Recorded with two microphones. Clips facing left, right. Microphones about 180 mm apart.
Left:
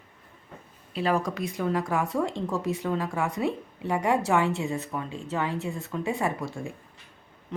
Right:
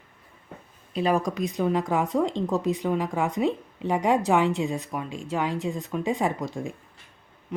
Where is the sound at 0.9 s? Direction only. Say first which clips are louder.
Right 2 dB; 15° right (ahead or behind).